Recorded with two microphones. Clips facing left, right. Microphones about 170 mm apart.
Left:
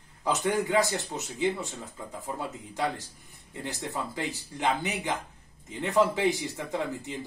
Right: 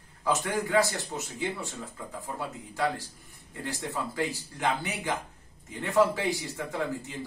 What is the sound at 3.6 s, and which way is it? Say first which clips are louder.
Speech: right 1 dB; 20° left (ahead or behind).